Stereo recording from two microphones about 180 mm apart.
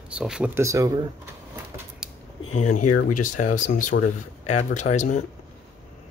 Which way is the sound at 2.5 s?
40° left (ahead or behind).